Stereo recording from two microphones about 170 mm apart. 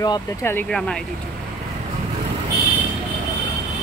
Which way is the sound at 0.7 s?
5° left (ahead or behind).